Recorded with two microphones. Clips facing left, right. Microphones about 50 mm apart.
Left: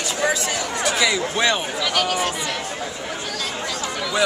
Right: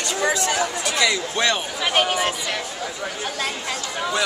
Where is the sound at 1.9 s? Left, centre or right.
Right.